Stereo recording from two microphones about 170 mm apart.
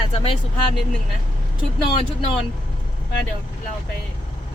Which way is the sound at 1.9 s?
30° left (ahead or behind).